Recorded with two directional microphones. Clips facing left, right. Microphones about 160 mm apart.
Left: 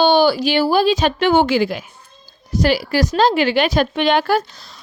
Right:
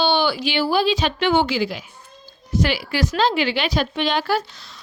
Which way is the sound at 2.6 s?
40° left (ahead or behind).